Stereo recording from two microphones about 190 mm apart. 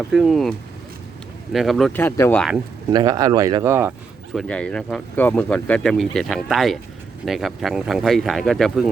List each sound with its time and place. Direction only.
0.0 s speech: centre (ahead or behind)
1.5 s speech: centre (ahead or behind)
2.0 s speech: 10° left (ahead or behind)
2.9 s speech: 20° right (ahead or behind)
4.4 s speech: 5° left (ahead or behind)